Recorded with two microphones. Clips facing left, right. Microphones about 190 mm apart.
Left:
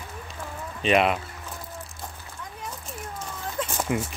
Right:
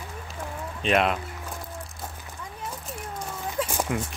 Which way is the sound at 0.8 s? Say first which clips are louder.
Left 2 dB; centre (ahead or behind).